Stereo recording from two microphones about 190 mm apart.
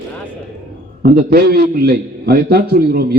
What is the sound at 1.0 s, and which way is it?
A man's voice, 55° right (ahead or behind).